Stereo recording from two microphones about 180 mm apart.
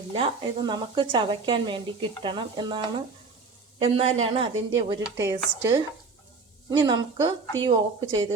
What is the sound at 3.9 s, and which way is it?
Speech, 35° right (ahead or behind).